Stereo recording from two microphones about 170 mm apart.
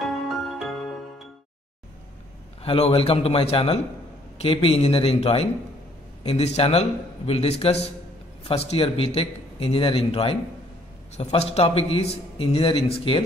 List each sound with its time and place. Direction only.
0.0 s music: centre (ahead or behind)
2.6 s a man's voice: 35° left (ahead or behind)